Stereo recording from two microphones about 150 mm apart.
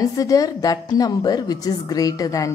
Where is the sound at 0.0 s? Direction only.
25° left (ahead or behind).